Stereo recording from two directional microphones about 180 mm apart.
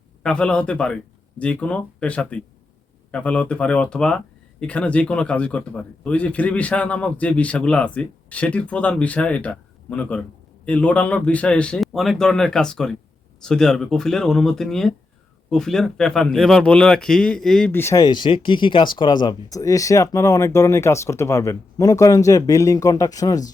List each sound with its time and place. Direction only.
0.2 s speech: 5° left (ahead or behind); by 23.5 s 20° left (ahead or behind)